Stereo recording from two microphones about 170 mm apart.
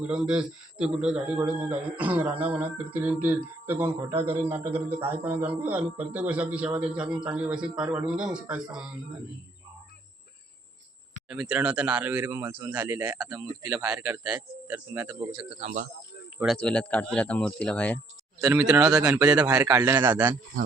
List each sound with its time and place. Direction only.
0.0 s a man's voice: 5° right (ahead or behind)
11.3 s a man's voice: 5° right (ahead or behind)
13.4 s a man's voice: 20° right (ahead or behind)
14.3 s a man's voice: 10° right (ahead or behind)
15.5 s speech: 40° right (ahead or behind)
16.6 s speech: 5° left (ahead or behind)
18.4 s a man's voice: 20° right (ahead or behind)